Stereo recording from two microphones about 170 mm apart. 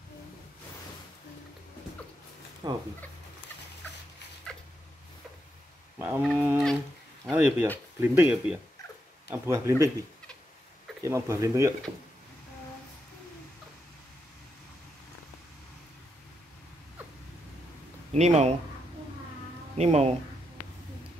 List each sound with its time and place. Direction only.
2.6 s speech: 25° right (ahead or behind)
5.9 s speech: 10° right (ahead or behind)
11.0 s speech: 15° right (ahead or behind)
18.1 s speech: 40° right (ahead or behind)
19.8 s speech: 40° right (ahead or behind)